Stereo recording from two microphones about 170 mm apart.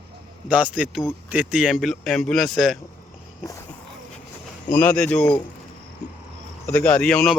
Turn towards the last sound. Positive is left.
turn(degrees=5)  # may be behind; listen again after turning